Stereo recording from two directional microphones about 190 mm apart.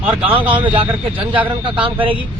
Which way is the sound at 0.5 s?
30° right (ahead or behind).